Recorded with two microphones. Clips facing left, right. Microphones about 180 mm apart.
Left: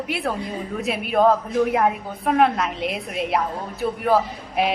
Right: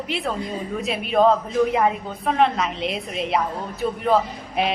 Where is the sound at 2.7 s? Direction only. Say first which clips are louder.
Even; 55° left (ahead or behind).